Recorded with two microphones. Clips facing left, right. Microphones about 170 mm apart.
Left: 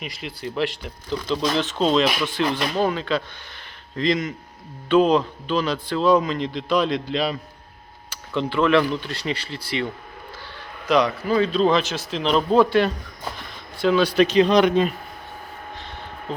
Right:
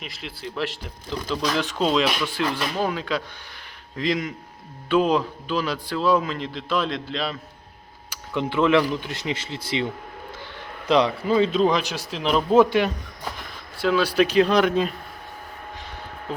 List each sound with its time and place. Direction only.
0.0 s speech: centre (ahead or behind)
1.4 s speech: 25° left (ahead or behind)
1.8 s speech: 5° right (ahead or behind)
8.1 s speech: 15° right (ahead or behind)
12.5 s speech: 15° right (ahead or behind)
13.8 s speech: 5° right (ahead or behind)